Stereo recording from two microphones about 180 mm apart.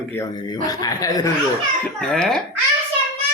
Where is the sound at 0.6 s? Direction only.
20° left (ahead or behind).